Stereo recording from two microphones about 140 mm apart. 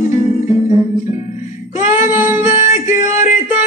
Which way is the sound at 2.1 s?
55° left (ahead or behind).